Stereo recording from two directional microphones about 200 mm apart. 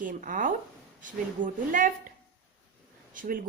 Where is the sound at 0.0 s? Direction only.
40° right (ahead or behind).